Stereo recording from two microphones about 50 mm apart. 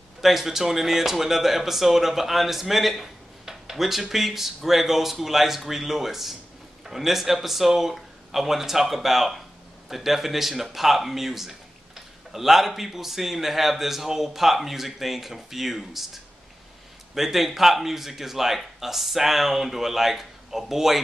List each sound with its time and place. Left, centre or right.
0.2 s speech: centre
17.1 s speech: centre